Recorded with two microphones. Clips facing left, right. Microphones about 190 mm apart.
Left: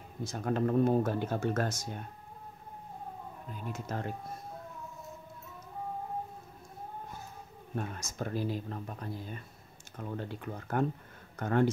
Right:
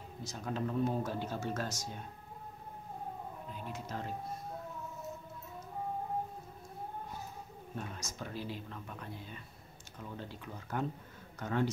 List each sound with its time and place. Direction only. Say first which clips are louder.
0.2 s speech: left 7 dB; 55° left (ahead or behind)
3.7 s speech: left 4 dB; 50° left (ahead or behind)
7.7 s speech: left 6 dB; 50° left (ahead or behind)
9.9 s speech: left 6 dB; 55° left (ahead or behind)